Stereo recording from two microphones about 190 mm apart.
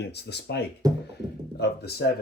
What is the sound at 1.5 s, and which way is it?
Speech, 60° left (ahead or behind).